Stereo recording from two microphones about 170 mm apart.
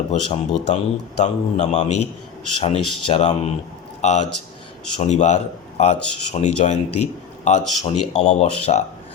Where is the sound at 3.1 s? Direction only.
35° left (ahead or behind).